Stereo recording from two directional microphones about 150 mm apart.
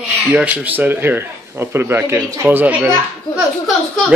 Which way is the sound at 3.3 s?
Centre (ahead or behind).